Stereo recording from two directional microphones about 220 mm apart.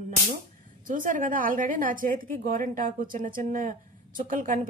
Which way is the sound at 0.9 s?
35° right (ahead or behind).